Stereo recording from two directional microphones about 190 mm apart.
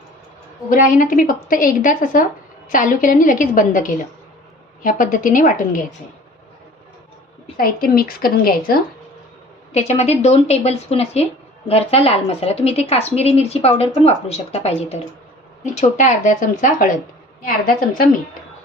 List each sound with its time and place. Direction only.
0.7 s a woman's voice: 45° left (ahead or behind)
7.5 s a woman's voice: 50° left (ahead or behind)
9.7 s a woman's voice: 35° left (ahead or behind)